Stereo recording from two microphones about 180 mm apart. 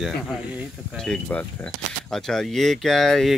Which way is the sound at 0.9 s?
5° left (ahead or behind).